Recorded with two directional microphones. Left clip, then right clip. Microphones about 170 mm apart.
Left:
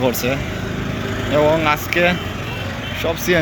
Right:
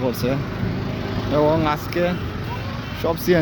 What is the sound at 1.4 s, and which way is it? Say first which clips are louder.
Speech: left 3 dB; 15° right (ahead or behind).